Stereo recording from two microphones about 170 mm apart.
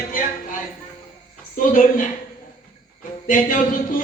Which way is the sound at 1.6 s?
50° left (ahead or behind).